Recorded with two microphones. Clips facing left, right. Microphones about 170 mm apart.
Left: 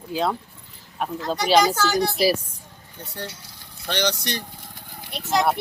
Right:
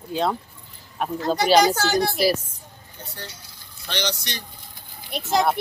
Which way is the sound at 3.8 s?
55° left (ahead or behind).